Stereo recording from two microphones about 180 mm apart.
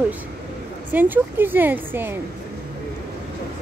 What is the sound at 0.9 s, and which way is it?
Speech, 10° right (ahead or behind).